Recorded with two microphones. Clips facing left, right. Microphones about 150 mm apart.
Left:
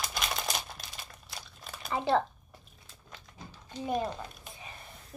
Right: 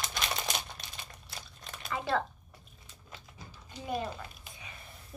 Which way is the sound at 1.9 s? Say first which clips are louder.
Left 4 dB; 30° left (ahead or behind).